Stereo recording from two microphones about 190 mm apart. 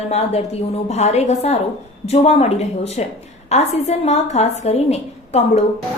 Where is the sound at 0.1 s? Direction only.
35° left (ahead or behind).